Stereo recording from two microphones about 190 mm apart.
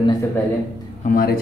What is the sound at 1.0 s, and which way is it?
Speech, 50° left (ahead or behind).